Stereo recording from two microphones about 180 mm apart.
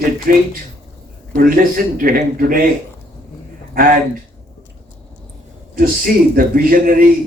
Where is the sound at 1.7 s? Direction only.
50° right (ahead or behind).